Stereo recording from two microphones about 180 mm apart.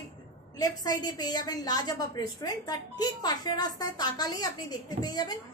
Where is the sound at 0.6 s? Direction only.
20° left (ahead or behind).